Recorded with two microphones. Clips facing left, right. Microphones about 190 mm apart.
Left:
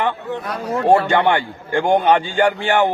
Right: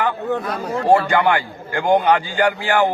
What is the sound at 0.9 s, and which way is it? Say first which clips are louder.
A man's voice: left 1 dB; 25° left (ahead or behind).